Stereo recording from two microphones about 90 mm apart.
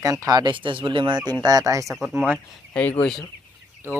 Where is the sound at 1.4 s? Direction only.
40° right (ahead or behind).